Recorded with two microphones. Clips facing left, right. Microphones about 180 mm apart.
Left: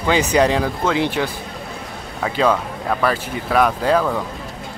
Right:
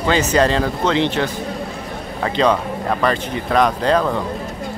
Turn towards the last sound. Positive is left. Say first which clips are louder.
# right 1 dB
turn(degrees=5)  # may be behind; listen again after turning